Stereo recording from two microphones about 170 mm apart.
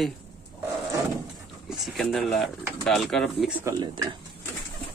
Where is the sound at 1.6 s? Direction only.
Centre (ahead or behind).